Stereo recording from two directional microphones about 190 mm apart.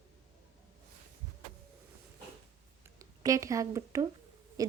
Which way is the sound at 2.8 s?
20° right (ahead or behind).